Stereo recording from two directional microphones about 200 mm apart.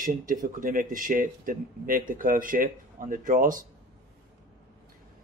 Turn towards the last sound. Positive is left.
turn(degrees=-45)  # may be behind; listen again after turning